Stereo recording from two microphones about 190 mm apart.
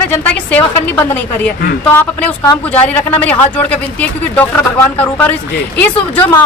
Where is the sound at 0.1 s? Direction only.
10° left (ahead or behind).